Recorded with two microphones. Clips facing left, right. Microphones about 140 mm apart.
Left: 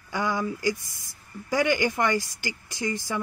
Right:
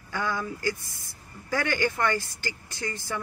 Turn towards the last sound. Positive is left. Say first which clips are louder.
# left 4 dB
turn(degrees=15)  # may be behind; listen again after turning